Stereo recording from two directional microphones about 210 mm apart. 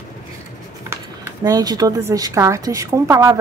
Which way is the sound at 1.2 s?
15° right (ahead or behind).